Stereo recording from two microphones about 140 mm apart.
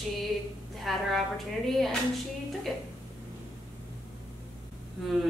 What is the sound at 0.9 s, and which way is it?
A woman's voice, centre (ahead or behind).